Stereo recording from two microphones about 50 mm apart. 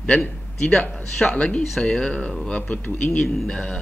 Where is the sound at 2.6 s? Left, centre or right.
Left.